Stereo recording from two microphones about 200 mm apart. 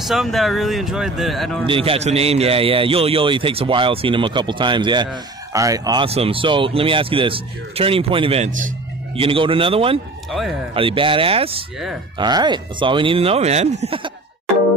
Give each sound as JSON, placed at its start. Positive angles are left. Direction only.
{"t": 0.0, "sound": "speech", "side_deg": 0}
{"t": 1.7, "sound": "a man's voice", "side_deg": -30}